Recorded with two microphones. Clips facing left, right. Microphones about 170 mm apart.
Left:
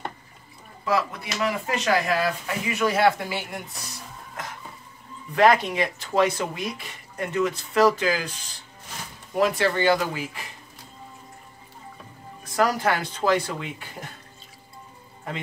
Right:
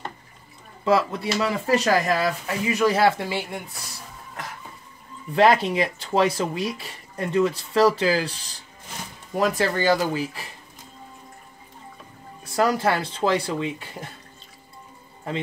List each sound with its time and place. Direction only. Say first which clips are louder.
0.8 s speech: right 4 dB; 30° right (ahead or behind)
5.3 s speech: right 1 dB; 30° right (ahead or behind)
9.4 s speech: even; 40° right (ahead or behind)
12.5 s speech: right 1 dB; 30° right (ahead or behind)